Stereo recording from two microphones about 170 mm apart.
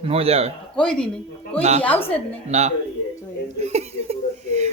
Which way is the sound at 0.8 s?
5° left (ahead or behind).